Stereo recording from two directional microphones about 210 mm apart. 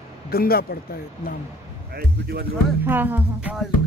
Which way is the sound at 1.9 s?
50° right (ahead or behind).